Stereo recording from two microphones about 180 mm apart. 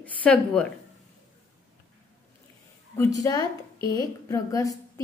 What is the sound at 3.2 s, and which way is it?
A woman's voice, 20° left (ahead or behind).